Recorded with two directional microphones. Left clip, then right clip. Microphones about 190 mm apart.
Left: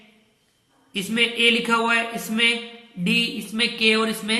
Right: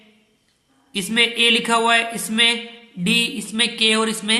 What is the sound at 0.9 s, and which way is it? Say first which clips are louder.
Speech: right 3 dB; 35° right (ahead or behind).